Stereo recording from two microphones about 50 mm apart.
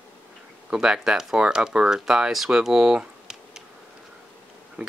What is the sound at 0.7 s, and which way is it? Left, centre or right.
Speech, centre.